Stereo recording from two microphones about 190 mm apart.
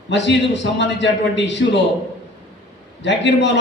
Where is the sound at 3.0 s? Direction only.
70° left (ahead or behind).